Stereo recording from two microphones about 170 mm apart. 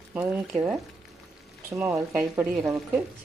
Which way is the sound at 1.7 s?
15° right (ahead or behind).